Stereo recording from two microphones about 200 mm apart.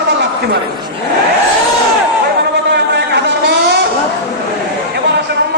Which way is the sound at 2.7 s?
60° right (ahead or behind).